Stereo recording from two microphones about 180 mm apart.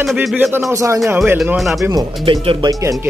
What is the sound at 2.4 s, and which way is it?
Speech, 20° right (ahead or behind).